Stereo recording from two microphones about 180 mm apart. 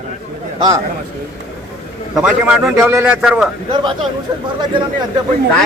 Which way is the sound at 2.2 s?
5° right (ahead or behind).